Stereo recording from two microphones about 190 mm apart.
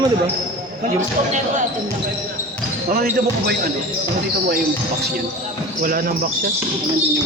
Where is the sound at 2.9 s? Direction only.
55° right (ahead or behind).